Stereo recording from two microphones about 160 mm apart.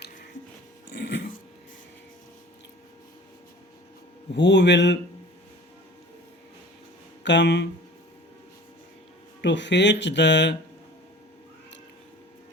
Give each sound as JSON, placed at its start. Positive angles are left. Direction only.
{"t": 0.9, "sound": "dog", "side_deg": 90}
{"t": 4.3, "sound": "speech", "side_deg": 90}
{"t": 7.3, "sound": "speech", "side_deg": 90}
{"t": 9.4, "sound": "speech", "side_deg": 90}